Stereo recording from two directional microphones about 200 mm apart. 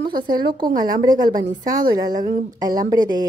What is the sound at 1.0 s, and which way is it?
Speech, 20° right (ahead or behind).